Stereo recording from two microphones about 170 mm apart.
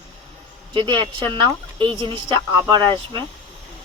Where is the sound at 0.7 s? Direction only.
30° right (ahead or behind).